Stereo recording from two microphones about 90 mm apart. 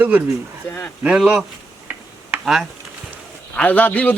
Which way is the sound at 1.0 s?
10° right (ahead or behind).